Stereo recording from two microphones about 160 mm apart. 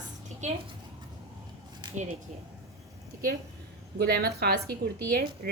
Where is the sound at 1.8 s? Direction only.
30° right (ahead or behind).